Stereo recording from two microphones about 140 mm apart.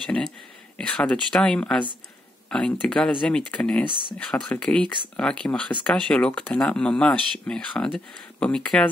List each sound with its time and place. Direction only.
0.0 s speech: 5° left (ahead or behind)